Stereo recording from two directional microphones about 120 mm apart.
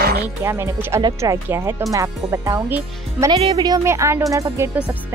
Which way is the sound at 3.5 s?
30° right (ahead or behind).